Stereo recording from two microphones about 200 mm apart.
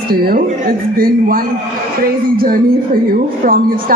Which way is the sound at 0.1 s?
50° right (ahead or behind).